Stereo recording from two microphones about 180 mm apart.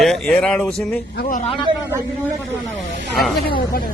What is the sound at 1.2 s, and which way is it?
Speech, 50° left (ahead or behind).